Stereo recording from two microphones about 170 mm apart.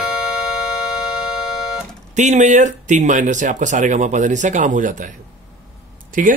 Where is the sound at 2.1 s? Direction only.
45° right (ahead or behind).